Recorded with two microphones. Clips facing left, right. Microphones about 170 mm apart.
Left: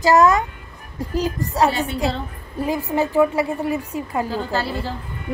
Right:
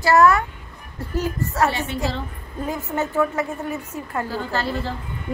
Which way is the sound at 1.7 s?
35° left (ahead or behind).